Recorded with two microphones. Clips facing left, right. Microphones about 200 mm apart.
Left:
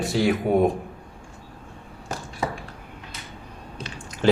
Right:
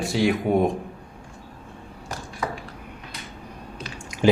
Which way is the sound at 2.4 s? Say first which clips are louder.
Left 1 dB; 25° left (ahead or behind).